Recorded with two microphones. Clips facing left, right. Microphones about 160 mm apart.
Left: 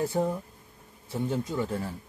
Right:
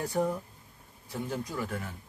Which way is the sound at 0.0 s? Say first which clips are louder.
Left 2 dB; 25° left (ahead or behind).